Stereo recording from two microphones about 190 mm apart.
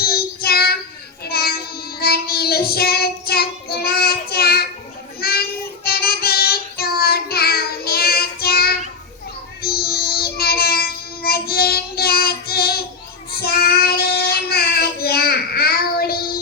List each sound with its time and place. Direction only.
0.0 s child singing: 55° left (ahead or behind)
5.8 s child singing: 55° left (ahead or behind)